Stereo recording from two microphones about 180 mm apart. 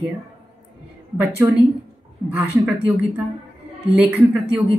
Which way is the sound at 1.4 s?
15° right (ahead or behind).